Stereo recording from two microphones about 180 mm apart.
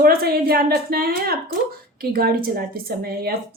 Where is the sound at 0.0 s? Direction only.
55° right (ahead or behind).